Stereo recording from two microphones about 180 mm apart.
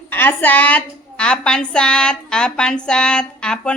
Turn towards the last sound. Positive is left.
turn(degrees=5)  # may be behind; listen again after turning